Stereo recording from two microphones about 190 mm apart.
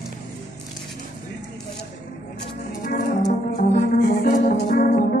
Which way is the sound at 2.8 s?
45° left (ahead or behind).